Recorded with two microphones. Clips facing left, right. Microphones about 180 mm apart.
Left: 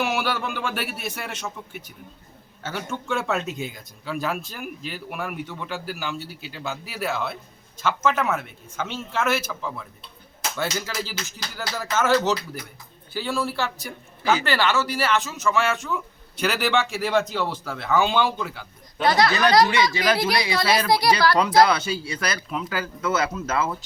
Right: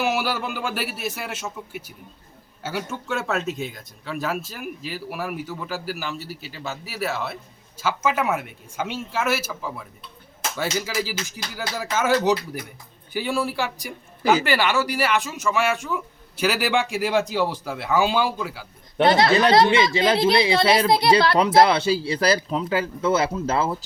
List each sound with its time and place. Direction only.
0.0 s speech: 5° right (ahead or behind)
19.0 s speech: 25° right (ahead or behind)